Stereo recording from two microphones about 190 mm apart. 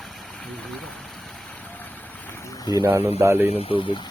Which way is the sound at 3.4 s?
30° left (ahead or behind).